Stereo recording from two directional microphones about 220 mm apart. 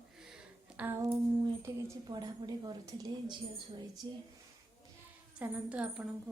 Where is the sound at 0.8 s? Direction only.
5° right (ahead or behind).